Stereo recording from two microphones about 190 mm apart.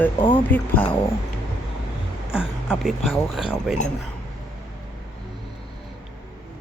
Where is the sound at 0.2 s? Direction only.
25° left (ahead or behind).